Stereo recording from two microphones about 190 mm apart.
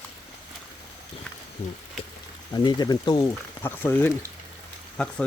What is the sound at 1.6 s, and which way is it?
Speech, 30° left (ahead or behind).